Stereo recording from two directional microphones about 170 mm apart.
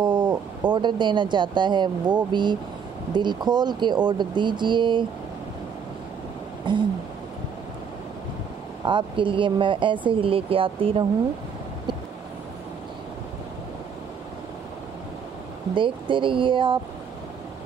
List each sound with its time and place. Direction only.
0.0 s speech: 25° right (ahead or behind)
6.7 s speech: 30° right (ahead or behind)
8.8 s speech: 30° right (ahead or behind)
15.7 s speech: 30° right (ahead or behind)